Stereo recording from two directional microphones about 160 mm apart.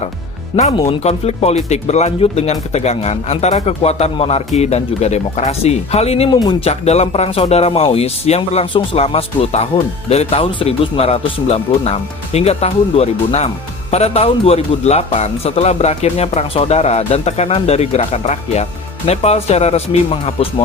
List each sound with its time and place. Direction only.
0.7 s speech: 35° left (ahead or behind)
6.7 s speech: 40° left (ahead or behind)